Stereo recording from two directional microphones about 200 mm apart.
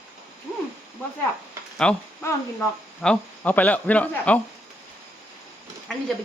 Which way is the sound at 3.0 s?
5° left (ahead or behind).